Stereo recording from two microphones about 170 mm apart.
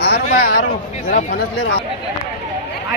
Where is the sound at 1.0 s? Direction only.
55° left (ahead or behind).